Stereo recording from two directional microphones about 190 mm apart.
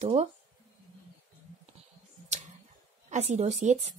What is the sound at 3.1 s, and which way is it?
Speech, 35° right (ahead or behind).